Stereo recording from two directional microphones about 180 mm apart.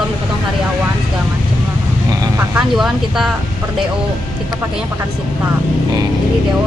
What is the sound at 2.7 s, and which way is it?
Speech, centre (ahead or behind).